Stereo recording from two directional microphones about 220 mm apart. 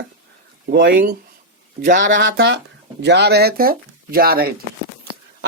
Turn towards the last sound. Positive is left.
turn(degrees=-40)  # may be behind; listen again after turning